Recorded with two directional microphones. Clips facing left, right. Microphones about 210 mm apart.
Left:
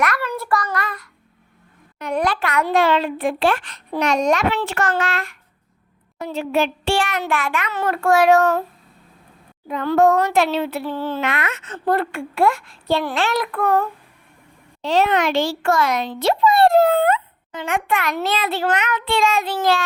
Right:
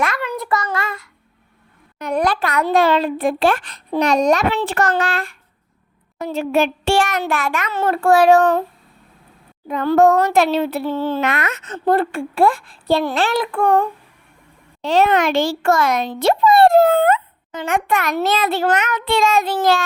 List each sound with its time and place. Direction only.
0.0 s a sound: 25° right (ahead or behind)
0.3 s child singing: 20° right (ahead or behind)
2.0 s a child's voice: 40° right (ahead or behind)
6.1 s a child's voice: 45° right (ahead or behind)
7.7 s a child's voice: 30° right (ahead or behind)
9.6 s a child's voice: 45° right (ahead or behind)
10.8 s a child's voice: 25° right (ahead or behind)
11.2 s a child's voice: 40° right (ahead or behind)
14.8 s a child's voice: 50° right (ahead or behind)